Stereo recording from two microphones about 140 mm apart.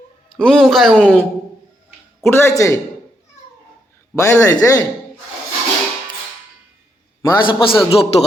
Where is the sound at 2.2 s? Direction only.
15° left (ahead or behind).